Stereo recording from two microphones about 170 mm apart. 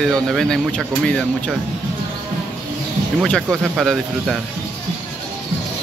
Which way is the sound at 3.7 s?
Centre (ahead or behind).